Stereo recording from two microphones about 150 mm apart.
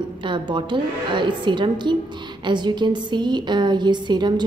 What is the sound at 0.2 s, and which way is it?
A woman's voice, 30° right (ahead or behind).